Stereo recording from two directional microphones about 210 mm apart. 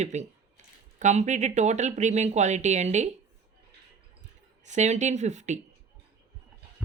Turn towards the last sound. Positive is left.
turn(degrees=-35)  # may be behind; listen again after turning